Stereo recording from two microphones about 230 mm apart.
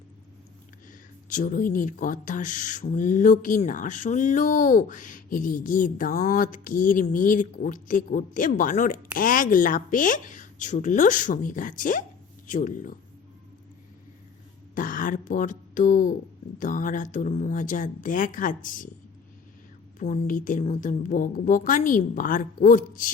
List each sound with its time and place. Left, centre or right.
1.3 s speech: left
14.8 s speech: left
20.0 s speech: left